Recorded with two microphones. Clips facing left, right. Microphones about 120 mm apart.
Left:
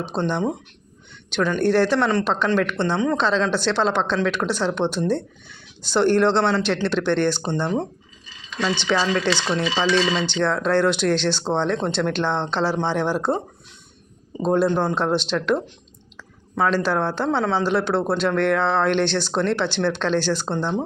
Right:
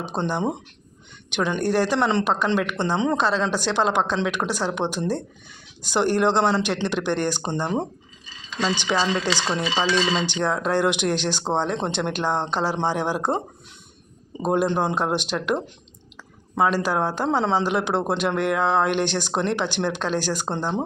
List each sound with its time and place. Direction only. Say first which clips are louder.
0.0 s speech: left 2 dB; 15° right (ahead or behind)
14.4 s speech: left 2 dB; 15° right (ahead or behind)